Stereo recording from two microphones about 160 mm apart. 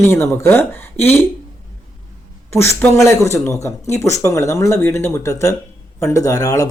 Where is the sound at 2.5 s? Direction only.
15° left (ahead or behind).